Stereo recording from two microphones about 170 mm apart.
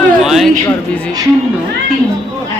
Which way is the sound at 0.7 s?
10° left (ahead or behind).